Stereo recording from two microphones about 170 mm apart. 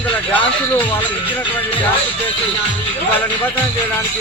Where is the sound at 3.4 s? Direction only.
10° left (ahead or behind).